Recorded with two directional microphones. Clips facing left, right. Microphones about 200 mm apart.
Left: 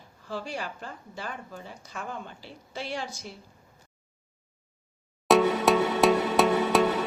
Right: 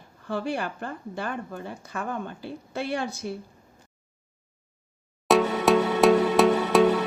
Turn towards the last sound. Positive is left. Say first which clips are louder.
# right 3 dB
turn(degrees=0)  # may be behind; listen again after turning